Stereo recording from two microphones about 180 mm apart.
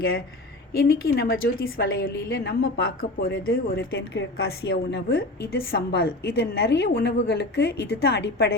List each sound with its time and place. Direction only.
0.8 s a woman's voice: 55° left (ahead or behind)